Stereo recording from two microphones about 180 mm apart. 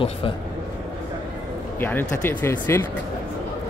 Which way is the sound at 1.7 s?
10° left (ahead or behind).